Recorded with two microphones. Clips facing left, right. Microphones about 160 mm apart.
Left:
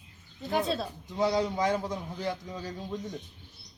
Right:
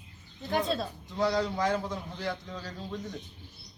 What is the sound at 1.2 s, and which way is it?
A man's voice, 20° left (ahead or behind).